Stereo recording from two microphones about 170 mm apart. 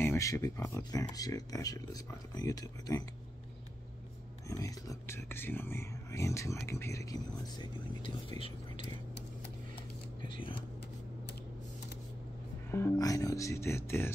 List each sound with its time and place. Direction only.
0.0 s speech: 15° left (ahead or behind)
4.5 s speech: 20° left (ahead or behind)
10.2 s speech: 30° left (ahead or behind)
12.7 s speech: 15° left (ahead or behind)